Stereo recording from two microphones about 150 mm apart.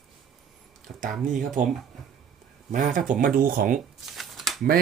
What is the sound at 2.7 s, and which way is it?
Speech, 55° right (ahead or behind).